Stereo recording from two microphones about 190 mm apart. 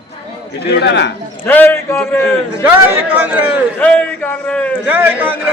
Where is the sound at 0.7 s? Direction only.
65° left (ahead or behind).